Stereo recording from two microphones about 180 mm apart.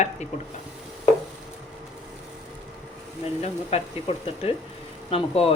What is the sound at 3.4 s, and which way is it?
Speech, 35° left (ahead or behind).